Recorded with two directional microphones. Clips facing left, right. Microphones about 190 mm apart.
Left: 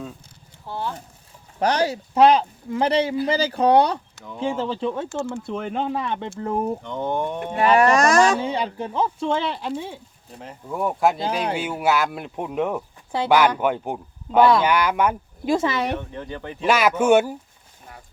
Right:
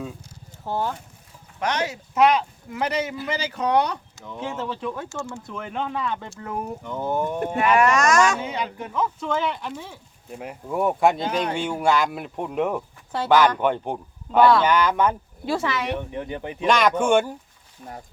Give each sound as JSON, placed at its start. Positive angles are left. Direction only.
{"t": 0.7, "sound": "speech", "side_deg": -45}
{"t": 1.5, "sound": "speech", "side_deg": 35}
{"t": 6.1, "sound": "speech", "side_deg": 25}
{"t": 6.8, "sound": "speech", "side_deg": -5}
{"t": 7.5, "sound": "speech", "side_deg": 35}
{"t": 10.3, "sound": "speech", "side_deg": -10}
{"t": 13.1, "sound": "speech", "side_deg": 10}
{"t": 15.7, "sound": "speech", "side_deg": 35}
{"t": 16.0, "sound": "speech", "side_deg": -15}
{"t": 16.6, "sound": "speech", "side_deg": 5}